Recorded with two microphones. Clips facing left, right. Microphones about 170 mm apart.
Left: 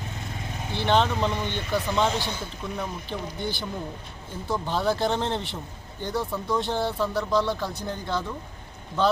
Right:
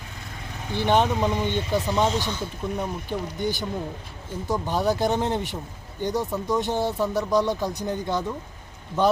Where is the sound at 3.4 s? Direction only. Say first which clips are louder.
Right 5 dB; 45° right (ahead or behind).